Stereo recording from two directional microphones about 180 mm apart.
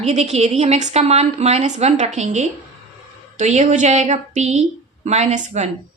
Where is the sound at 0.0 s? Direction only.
40° right (ahead or behind).